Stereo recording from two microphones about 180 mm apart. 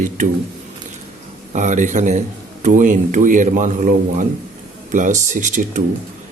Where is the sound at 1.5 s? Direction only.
45° right (ahead or behind).